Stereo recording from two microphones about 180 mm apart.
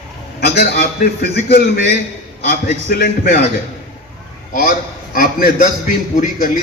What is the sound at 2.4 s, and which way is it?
Speech, 55° left (ahead or behind).